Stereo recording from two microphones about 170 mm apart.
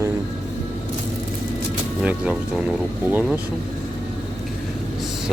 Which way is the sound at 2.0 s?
5° right (ahead or behind).